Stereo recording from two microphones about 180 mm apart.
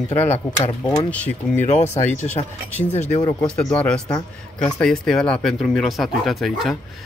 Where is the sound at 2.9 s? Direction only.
40° left (ahead or behind).